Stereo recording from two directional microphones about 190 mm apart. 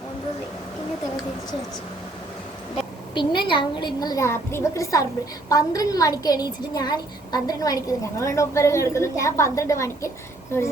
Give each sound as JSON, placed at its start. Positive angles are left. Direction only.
{"t": 3.2, "sound": "a woman's voice", "side_deg": 25}